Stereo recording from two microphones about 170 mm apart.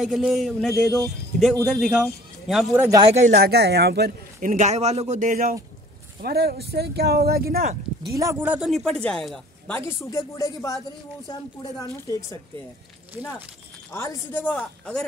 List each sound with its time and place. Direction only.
0.0 s speech: centre (ahead or behind)
3.0 s speech: 40° right (ahead or behind)
3.3 s speech: 65° right (ahead or behind)
4.4 s speech: 50° right (ahead or behind)
6.2 s speech: 70° right (ahead or behind)
8.2 s speech: 20° right (ahead or behind)
8.5 s speech: centre (ahead or behind)
9.8 s a man's voice: 20° left (ahead or behind)
11.9 s a woman's voice: 20° left (ahead or behind)
13.9 s a man's voice: 15° left (ahead or behind)